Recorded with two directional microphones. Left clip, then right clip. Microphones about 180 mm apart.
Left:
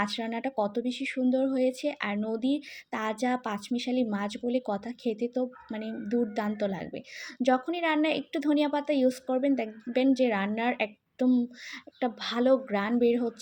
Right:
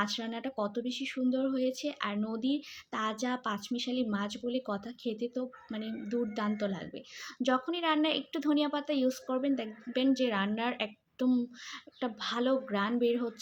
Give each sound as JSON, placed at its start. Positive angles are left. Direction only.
{"t": 0.0, "sound": "speech", "side_deg": 25}